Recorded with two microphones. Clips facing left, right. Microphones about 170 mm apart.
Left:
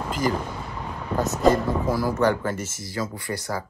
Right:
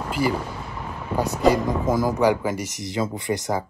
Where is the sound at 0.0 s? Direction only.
5° right (ahead or behind).